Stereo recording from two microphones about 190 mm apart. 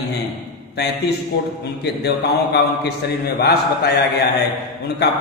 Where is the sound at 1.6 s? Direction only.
60° left (ahead or behind).